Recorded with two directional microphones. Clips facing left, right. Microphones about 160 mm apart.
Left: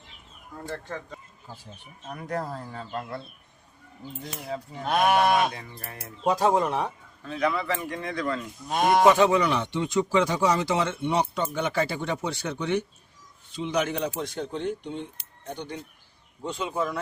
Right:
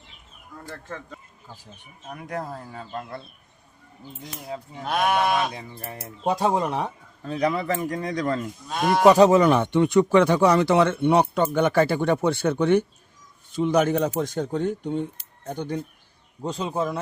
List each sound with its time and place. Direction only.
2.3 s speech: 15° right (ahead or behind)
4.5 s speech: centre (ahead or behind)
5.5 s speech: 25° right (ahead or behind)
7.3 s speech: 35° right (ahead or behind)
8.6 s speech: 20° left (ahead or behind)
9.0 s speech: 40° right (ahead or behind)